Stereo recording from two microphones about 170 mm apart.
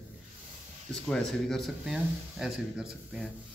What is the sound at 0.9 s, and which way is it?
Speech, 5° left (ahead or behind).